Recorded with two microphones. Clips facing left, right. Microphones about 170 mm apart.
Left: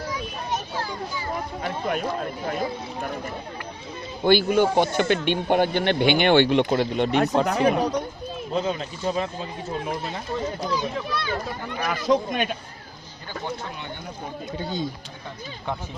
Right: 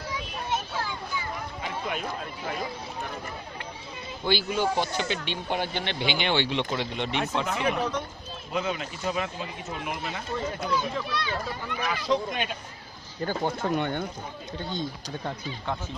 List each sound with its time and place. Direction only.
0.5 s a sound: 40° left (ahead or behind)
1.9 s speech: 45° left (ahead or behind)
4.2 s speech: 55° left (ahead or behind); by 10.7 s 35° left (ahead or behind)
11.8 s speech: 45° left (ahead or behind)
13.2 s speech: 50° right (ahead or behind)